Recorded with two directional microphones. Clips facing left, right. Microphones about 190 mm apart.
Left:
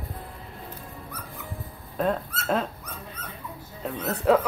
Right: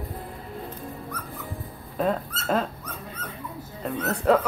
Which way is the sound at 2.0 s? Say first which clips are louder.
Right 1 dB; centre (ahead or behind).